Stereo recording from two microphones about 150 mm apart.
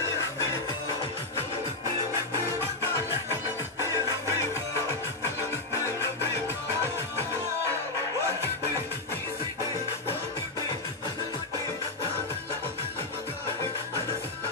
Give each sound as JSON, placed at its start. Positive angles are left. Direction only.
{"t": 3.9, "sound": "music", "side_deg": 20}